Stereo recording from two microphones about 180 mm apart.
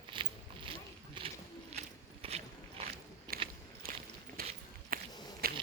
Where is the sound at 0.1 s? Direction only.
30° right (ahead or behind).